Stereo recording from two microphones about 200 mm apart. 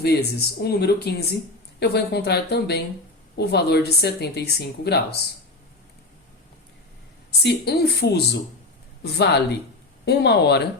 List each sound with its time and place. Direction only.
0.0 s speech: 55° left (ahead or behind)
7.3 s speech: 55° left (ahead or behind)